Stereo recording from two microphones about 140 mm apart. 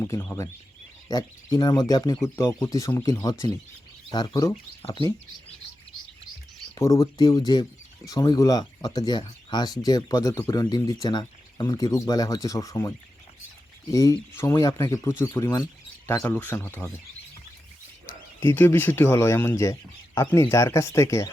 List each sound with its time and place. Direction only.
0.0 s speech: 15° left (ahead or behind)
4.8 s speech: 45° left (ahead or behind)
6.7 s speech: 25° left (ahead or behind)
13.9 s speech: 25° left (ahead or behind)
18.3 s speech: 15° left (ahead or behind)